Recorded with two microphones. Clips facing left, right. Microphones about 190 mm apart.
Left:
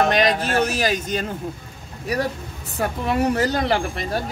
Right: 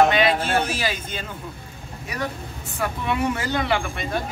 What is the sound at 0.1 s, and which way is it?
Speech, 40° left (ahead or behind).